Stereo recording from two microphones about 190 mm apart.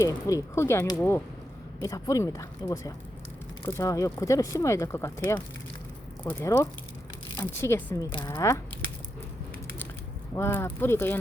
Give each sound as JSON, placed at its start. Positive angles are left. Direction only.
{"t": 0.0, "sound": "speech", "side_deg": 20}
{"t": 10.3, "sound": "speech", "side_deg": 15}